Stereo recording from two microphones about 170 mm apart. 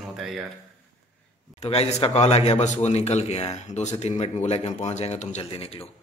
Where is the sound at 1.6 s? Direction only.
40° left (ahead or behind).